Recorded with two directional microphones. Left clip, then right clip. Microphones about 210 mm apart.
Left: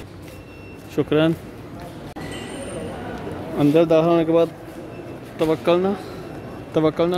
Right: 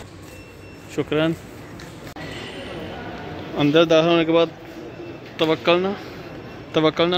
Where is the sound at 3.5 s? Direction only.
5° left (ahead or behind).